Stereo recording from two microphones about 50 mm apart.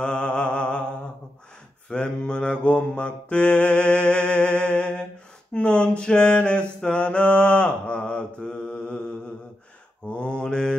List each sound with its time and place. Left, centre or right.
0.0 s mantra: left
1.9 s mantra: centre
3.3 s a sound: left
5.5 s mantra: left
10.0 s mantra: centre